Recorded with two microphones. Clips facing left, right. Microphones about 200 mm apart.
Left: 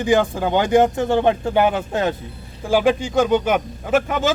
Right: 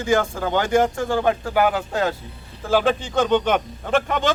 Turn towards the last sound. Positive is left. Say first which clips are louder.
# left 2 dB
turn(degrees=5)  # may be behind; listen again after turning